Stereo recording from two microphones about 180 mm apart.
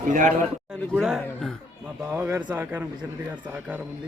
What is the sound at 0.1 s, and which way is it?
Speech, 45° right (ahead or behind).